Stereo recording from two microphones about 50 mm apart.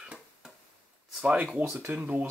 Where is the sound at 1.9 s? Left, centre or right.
Right.